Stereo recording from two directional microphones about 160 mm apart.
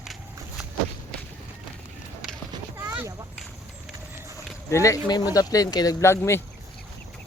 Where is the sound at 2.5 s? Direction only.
15° right (ahead or behind).